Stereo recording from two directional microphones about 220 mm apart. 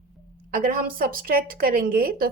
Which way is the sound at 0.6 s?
40° right (ahead or behind).